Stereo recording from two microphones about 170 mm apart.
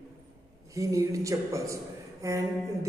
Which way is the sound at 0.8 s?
20° right (ahead or behind).